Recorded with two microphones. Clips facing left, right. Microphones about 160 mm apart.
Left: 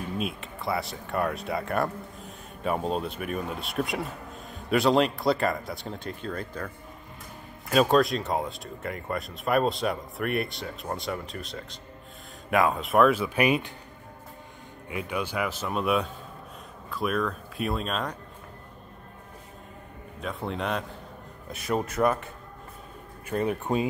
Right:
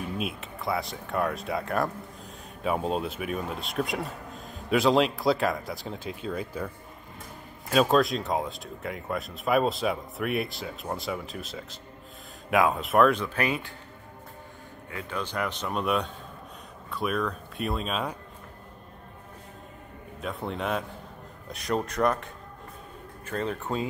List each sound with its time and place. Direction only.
0.2 s speech: centre (ahead or behind)
7.7 s speech: centre (ahead or behind); by 13.7 s 15° left (ahead or behind)
14.9 s speech: 15° left (ahead or behind); by 18.1 s centre (ahead or behind)
20.2 s speech: centre (ahead or behind); by 23.9 s 15° left (ahead or behind)